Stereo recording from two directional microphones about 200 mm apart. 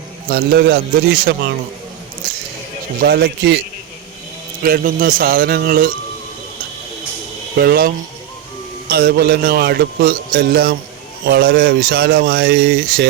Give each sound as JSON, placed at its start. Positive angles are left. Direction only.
{"t": 0.3, "sound": "a man's voice", "side_deg": -55}
{"t": 2.2, "sound": "a sound", "side_deg": -50}
{"t": 3.0, "sound": "a man's voice", "side_deg": -55}
{"t": 4.6, "sound": "a man's voice", "side_deg": -45}
{"t": 7.5, "sound": "a man's voice", "side_deg": -55}